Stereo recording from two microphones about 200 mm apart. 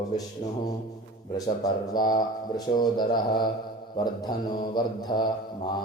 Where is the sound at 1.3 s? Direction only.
20° left (ahead or behind).